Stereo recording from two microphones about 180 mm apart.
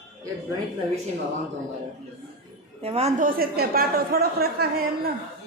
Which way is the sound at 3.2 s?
55° right (ahead or behind).